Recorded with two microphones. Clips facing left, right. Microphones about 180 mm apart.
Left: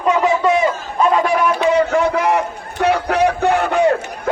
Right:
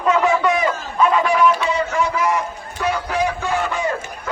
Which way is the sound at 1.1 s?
45° left (ahead or behind).